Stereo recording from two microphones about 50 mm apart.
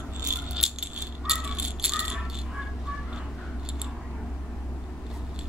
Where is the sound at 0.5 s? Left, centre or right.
Centre.